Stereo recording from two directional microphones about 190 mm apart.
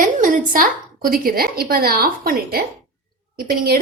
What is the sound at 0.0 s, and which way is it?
A woman's voice, 45° right (ahead or behind).